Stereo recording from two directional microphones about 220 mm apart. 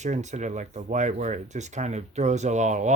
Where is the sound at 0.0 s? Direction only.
30° right (ahead or behind).